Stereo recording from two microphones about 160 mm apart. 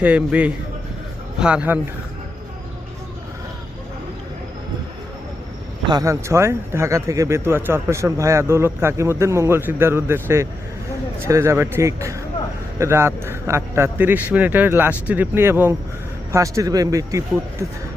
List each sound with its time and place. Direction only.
0.0 s speech: 10° right (ahead or behind)
5.9 s speech: 20° right (ahead or behind)